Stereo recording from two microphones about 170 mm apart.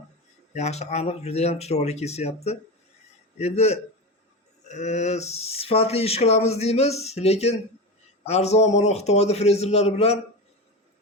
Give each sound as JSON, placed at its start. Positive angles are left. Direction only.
{"t": 0.5, "sound": "speech", "side_deg": 40}